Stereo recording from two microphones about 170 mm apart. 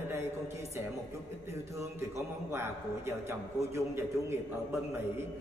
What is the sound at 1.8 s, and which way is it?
A man's voice, 15° right (ahead or behind).